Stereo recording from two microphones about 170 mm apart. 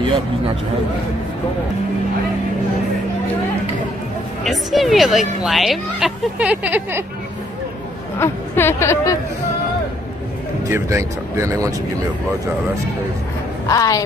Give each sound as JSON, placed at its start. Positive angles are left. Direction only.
{"t": 4.5, "sound": "a woman's voice", "side_deg": 0}
{"t": 8.2, "sound": "speech", "side_deg": 15}
{"t": 10.7, "sound": "speech", "side_deg": -15}
{"t": 13.7, "sound": "a woman's voice", "side_deg": 20}